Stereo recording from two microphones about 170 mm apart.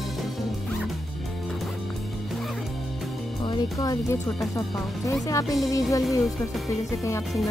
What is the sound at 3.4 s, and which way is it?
Speech, 25° left (ahead or behind).